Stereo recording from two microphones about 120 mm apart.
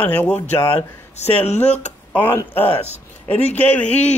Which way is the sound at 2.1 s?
15° left (ahead or behind).